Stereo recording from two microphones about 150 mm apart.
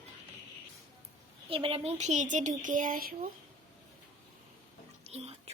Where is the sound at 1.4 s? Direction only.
40° right (ahead or behind); by 3.3 s 70° right (ahead or behind).